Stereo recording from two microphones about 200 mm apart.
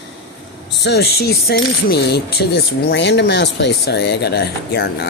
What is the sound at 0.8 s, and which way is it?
Speech, 55° left (ahead or behind).